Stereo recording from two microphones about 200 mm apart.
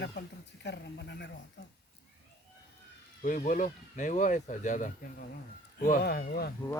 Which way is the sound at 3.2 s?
40° left (ahead or behind).